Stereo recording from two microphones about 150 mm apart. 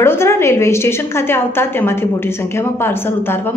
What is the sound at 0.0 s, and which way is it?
A woman's voice, 15° left (ahead or behind).